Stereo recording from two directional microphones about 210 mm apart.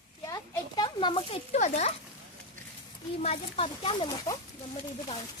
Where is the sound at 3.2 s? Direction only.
30° left (ahead or behind).